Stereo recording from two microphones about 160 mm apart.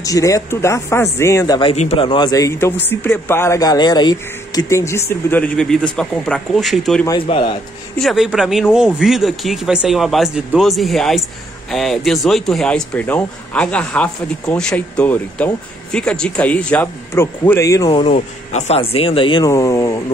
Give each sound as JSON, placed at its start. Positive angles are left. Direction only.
{"t": 0.0, "sound": "speech", "side_deg": 20}
{"t": 1.6, "sound": "speech", "side_deg": 40}
{"t": 5.3, "sound": "speech", "side_deg": 5}
{"t": 7.1, "sound": "speech", "side_deg": 35}
{"t": 8.0, "sound": "speech", "side_deg": 0}
{"t": 18.1, "sound": "speech", "side_deg": 45}